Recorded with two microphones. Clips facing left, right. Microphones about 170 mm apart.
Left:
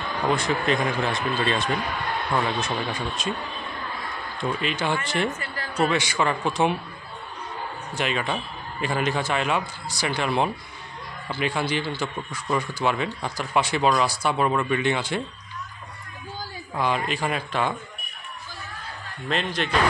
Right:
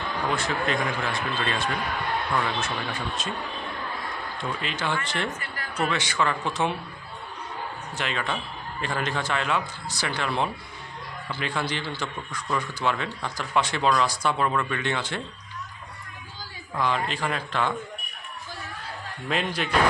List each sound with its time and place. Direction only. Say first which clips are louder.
0.3 s a man's voice: left 5 dB; 20° left (ahead or behind)
4.4 s a man's voice: left 5 dB; 15° left (ahead or behind)
5.4 s a sound: left 4 dB; 30° left (ahead or behind)
5.9 s a man's voice: left 1 dB; 15° left (ahead or behind)
8.0 s a man's voice: left 3 dB; 15° left (ahead or behind)
16.8 s a man's voice: left 1 dB; 15° left (ahead or behind)
19.2 s speech: left 1 dB; 5° right (ahead or behind)